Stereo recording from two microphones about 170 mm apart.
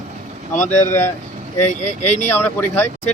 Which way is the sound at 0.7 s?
10° left (ahead or behind).